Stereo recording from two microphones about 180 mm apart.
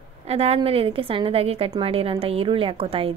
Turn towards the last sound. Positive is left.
turn(degrees=-30)  # may be behind; listen again after turning